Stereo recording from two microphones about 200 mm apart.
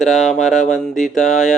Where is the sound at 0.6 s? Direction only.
40° left (ahead or behind).